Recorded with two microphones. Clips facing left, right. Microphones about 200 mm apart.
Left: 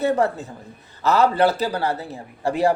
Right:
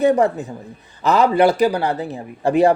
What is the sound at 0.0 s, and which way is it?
A man's voice, 15° right (ahead or behind).